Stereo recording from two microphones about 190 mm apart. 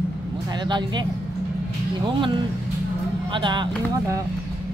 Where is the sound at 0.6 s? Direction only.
25° right (ahead or behind).